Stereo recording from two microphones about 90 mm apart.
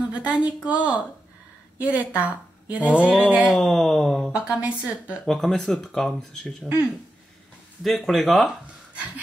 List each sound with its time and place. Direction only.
0.1 s a woman's voice: 15° right (ahead or behind)
1.8 s a woman's voice: 15° right (ahead or behind)
3.6 s speech: centre (ahead or behind)
4.3 s a woman's voice: 15° right (ahead or behind)
5.2 s speech: 5° left (ahead or behind)
7.8 s speech: centre (ahead or behind)
8.9 s a sound: 15° right (ahead or behind)